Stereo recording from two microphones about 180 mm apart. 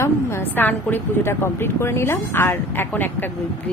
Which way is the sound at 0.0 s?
15° left (ahead or behind).